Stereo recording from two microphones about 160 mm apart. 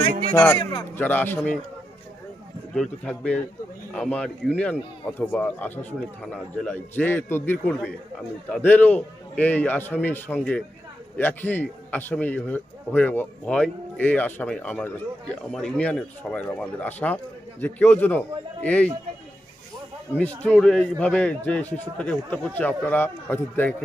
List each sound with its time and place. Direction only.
0.3 s a man's voice: 15° left (ahead or behind)
2.7 s a man's voice: 5° left (ahead or behind)
20.2 s a man's voice: 5° left (ahead or behind)